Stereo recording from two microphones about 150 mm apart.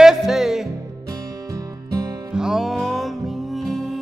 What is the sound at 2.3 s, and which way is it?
Music, 5° right (ahead or behind).